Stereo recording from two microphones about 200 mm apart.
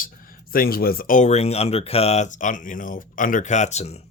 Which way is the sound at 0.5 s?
50° left (ahead or behind).